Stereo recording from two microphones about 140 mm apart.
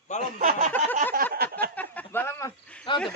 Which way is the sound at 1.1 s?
90° right.